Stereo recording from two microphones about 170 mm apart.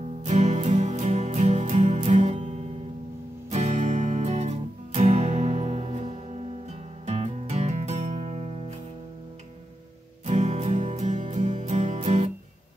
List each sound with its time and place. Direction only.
0.2 s music: 40° right (ahead or behind)
10.2 s music: 40° right (ahead or behind)